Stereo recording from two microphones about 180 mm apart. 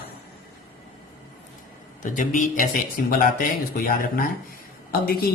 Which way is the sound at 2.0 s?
45° left (ahead or behind).